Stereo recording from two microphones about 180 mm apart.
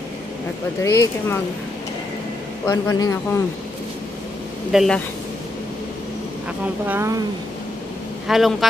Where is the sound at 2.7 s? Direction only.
15° left (ahead or behind).